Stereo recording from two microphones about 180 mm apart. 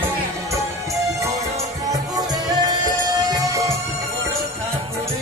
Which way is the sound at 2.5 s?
20° right (ahead or behind).